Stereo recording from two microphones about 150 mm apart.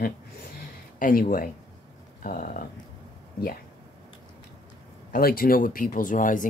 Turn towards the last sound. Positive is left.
turn(degrees=60)  # may be behind; listen again after turning